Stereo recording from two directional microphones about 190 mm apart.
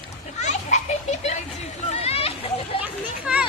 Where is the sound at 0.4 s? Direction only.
40° left (ahead or behind).